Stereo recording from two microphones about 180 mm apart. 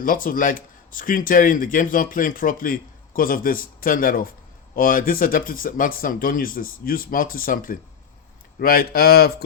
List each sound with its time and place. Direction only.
0.0 s speech: 50° left (ahead or behind)